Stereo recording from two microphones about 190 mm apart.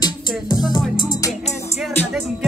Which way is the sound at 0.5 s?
20° left (ahead or behind).